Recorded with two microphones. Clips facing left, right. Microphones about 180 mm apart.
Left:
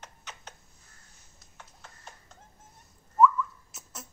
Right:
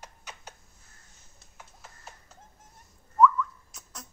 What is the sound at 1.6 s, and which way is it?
Music, 5° right (ahead or behind).